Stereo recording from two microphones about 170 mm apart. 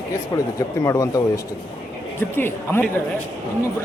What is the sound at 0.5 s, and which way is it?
A man's voice, 20° left (ahead or behind).